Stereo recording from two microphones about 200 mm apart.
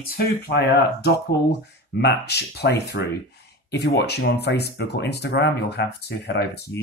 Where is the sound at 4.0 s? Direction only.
55° left (ahead or behind).